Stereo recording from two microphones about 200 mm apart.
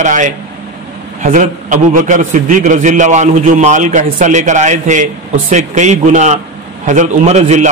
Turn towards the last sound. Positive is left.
turn(degrees=-35)  # may be behind; listen again after turning